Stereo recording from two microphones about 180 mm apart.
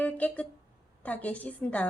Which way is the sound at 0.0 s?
10° left (ahead or behind).